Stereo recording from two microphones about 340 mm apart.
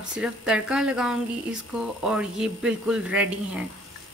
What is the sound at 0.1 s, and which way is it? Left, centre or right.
Frying, centre.